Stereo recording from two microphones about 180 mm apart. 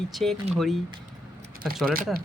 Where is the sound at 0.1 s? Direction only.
Centre (ahead or behind).